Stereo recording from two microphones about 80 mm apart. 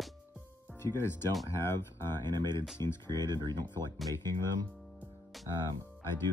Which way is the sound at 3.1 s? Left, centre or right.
Right.